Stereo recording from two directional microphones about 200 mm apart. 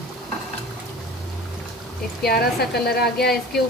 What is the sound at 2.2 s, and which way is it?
Speech, 50° left (ahead or behind).